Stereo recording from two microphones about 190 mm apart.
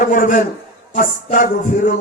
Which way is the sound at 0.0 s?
45° left (ahead or behind).